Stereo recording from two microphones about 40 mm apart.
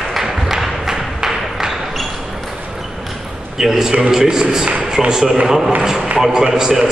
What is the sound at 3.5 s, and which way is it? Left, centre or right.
A man's voice, centre.